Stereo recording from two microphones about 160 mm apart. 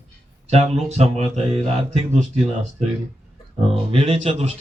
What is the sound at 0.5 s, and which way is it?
Speech, 45° right (ahead or behind).